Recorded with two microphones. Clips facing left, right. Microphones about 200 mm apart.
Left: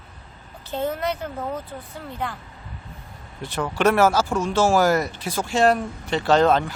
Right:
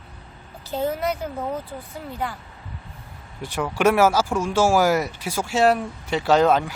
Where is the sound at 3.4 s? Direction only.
10° right (ahead or behind).